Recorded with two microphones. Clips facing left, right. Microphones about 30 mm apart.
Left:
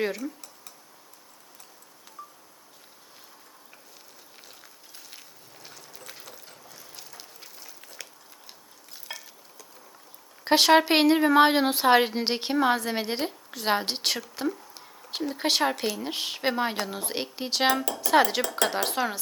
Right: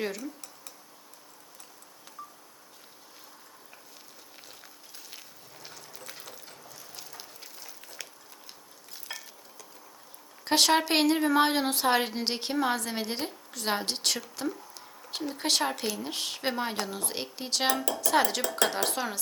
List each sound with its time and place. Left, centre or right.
0.0 s a woman's voice: centre
2.2 s a sound: centre
5.6 s a sound: centre
9.0 s stir: centre
10.4 s a woman's voice: centre
14.9 s a sound: centre
15.4 s a woman's voice: centre
18.0 s dishes: centre
18.7 s a woman's voice: centre